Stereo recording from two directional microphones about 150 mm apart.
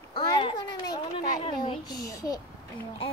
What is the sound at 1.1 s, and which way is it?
A child's voice, 40° left (ahead or behind).